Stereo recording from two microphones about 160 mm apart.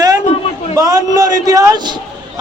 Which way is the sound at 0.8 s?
20° right (ahead or behind).